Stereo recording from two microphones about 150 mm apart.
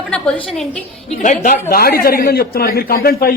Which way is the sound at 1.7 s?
85° left.